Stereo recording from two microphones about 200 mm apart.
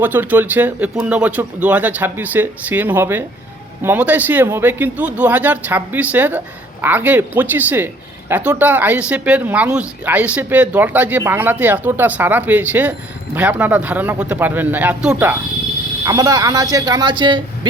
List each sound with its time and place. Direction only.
0.0 s speech: 10° right (ahead or behind)
16.0 s speech: 20° right (ahead or behind)